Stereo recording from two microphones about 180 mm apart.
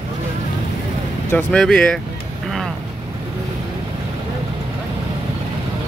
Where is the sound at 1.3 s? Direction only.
5° left (ahead or behind).